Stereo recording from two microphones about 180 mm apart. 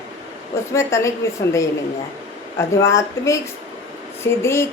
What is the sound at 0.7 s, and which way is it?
Speech, 15° left (ahead or behind).